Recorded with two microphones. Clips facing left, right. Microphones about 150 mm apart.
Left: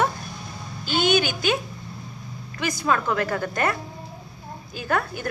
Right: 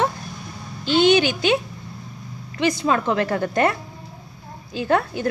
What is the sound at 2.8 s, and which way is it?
Speech, 25° right (ahead or behind).